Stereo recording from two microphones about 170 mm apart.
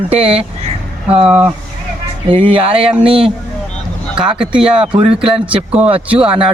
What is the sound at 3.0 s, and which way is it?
Speech, 30° right (ahead or behind).